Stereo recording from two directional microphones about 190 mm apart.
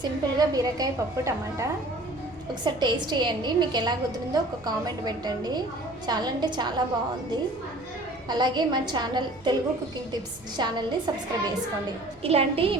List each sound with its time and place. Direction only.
0.0 s a woman's voice: 20° right (ahead or behind)
2.6 s a woman's voice: 25° right (ahead or behind)
8.3 s a woman's voice: 20° right (ahead or behind)
10.6 s a woman's voice: 20° right (ahead or behind)